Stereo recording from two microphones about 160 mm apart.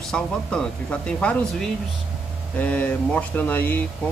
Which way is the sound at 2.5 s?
10° left (ahead or behind).